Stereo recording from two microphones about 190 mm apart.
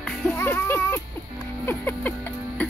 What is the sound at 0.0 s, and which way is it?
Music, centre (ahead or behind).